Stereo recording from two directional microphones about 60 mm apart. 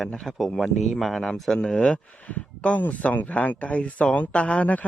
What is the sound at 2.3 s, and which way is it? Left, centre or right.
Speech, left.